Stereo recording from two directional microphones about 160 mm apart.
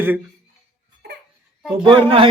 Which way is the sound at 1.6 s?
Centre (ahead or behind).